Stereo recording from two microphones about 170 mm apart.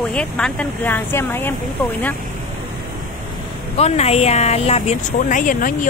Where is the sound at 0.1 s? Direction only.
5° left (ahead or behind).